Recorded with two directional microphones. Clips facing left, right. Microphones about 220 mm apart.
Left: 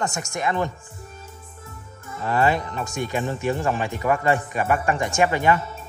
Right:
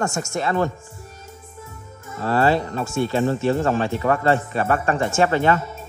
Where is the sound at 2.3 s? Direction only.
15° left (ahead or behind).